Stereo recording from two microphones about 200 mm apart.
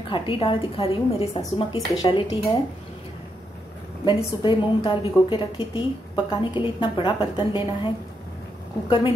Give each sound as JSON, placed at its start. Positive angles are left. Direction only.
{"t": 0.1, "sound": "a woman's voice", "side_deg": 25}
{"t": 4.0, "sound": "a woman's voice", "side_deg": 25}